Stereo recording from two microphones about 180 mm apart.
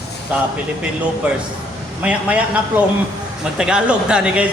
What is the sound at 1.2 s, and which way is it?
Speech, 10° right (ahead or behind).